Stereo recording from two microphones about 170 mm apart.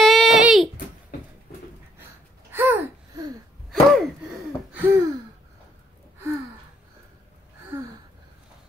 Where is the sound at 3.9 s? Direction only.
5° right (ahead or behind).